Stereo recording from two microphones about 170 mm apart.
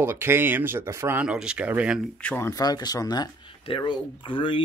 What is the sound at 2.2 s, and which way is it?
Speech, 10° left (ahead or behind).